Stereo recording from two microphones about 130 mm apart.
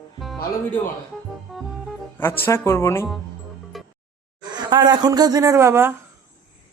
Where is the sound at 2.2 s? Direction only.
15° left (ahead or behind).